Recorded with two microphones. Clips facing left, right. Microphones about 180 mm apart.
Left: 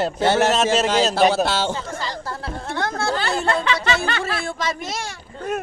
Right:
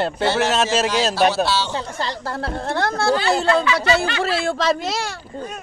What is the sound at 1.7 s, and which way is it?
A woman's voice, 70° right (ahead or behind).